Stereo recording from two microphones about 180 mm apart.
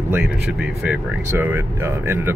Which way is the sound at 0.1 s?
5° right (ahead or behind).